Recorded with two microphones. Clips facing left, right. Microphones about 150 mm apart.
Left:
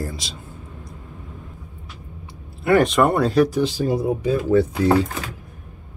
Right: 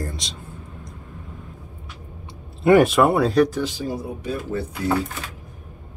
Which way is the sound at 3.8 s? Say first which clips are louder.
Left 7 dB; 80° left.